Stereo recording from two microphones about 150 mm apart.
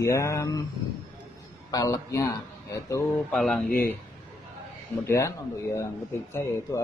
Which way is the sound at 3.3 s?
Centre (ahead or behind).